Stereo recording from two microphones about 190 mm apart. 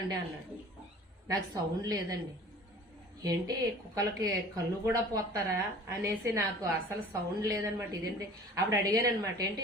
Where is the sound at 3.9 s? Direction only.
20° right (ahead or behind).